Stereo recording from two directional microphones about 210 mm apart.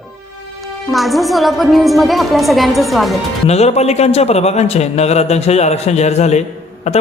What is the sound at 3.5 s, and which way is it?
A man's voice, 30° left (ahead or behind).